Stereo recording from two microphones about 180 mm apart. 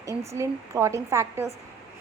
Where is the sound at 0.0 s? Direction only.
15° right (ahead or behind).